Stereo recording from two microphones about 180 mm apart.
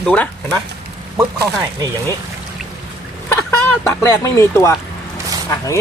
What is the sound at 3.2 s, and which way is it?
Speech, 15° left (ahead or behind).